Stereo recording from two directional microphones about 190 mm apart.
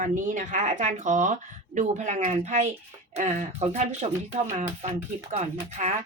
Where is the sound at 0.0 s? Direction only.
40° right (ahead or behind).